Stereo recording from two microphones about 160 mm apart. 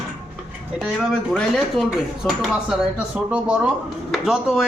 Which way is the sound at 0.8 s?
5° right (ahead or behind).